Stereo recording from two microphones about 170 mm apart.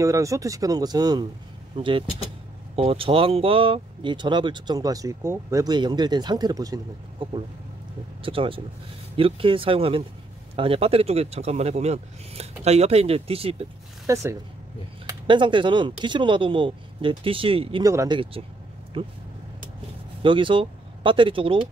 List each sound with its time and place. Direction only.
0.0 s speech: 20° right (ahead or behind)
8.2 s speech: 30° right (ahead or behind)
14.0 s speech: 20° right (ahead or behind)
15.2 s speech: 30° right (ahead or behind)
17.8 s speech: 20° right (ahead or behind)
20.2 s speech: 30° right (ahead or behind)